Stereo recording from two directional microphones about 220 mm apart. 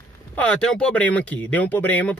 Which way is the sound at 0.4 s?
5° left (ahead or behind).